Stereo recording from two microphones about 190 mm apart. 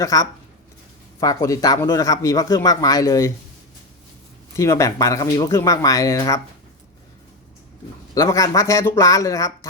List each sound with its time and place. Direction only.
0.0 s speech: 15° left (ahead or behind)
4.5 s speech: 15° left (ahead or behind)
8.1 s speech: 15° left (ahead or behind)